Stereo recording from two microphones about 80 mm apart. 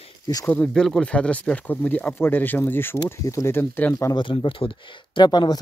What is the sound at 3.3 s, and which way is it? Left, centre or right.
Speech, left.